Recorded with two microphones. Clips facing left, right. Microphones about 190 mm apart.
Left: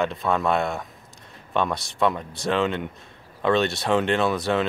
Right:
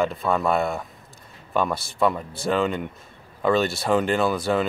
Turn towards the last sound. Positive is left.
turn(degrees=0)  # may be behind; listen again after turning